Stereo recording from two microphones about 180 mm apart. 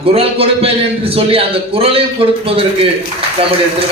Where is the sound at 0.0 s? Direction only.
30° right (ahead or behind).